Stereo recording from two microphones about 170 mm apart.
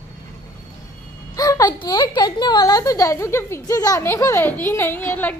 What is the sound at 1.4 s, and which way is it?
A man's voice, 20° left (ahead or behind).